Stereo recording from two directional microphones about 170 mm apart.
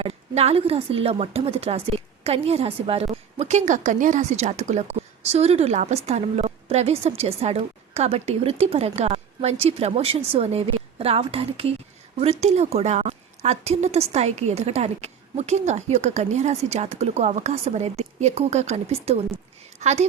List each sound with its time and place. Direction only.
0.0 s a woman's voice: 35° right (ahead or behind)